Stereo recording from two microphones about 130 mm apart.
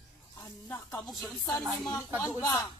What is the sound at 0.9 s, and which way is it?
Speech, centre (ahead or behind).